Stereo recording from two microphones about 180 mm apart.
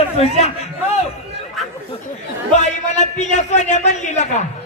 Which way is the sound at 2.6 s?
40° left (ahead or behind).